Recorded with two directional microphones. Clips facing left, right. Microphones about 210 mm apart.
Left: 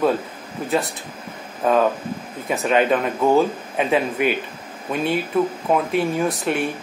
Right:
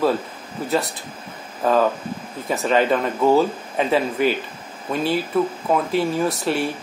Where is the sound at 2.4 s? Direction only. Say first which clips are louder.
Even; 15° left (ahead or behind).